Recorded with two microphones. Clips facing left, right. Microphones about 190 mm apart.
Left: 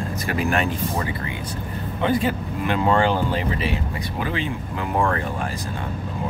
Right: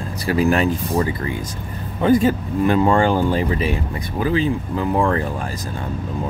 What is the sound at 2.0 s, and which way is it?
Speech, 45° right (ahead or behind).